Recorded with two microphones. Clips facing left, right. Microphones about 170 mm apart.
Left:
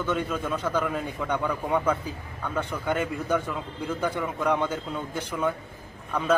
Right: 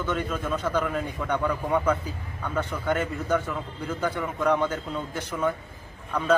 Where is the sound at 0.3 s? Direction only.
10° left (ahead or behind).